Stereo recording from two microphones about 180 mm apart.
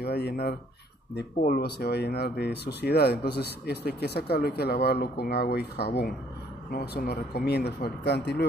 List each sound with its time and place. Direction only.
0.0 s speech: 65° left (ahead or behind)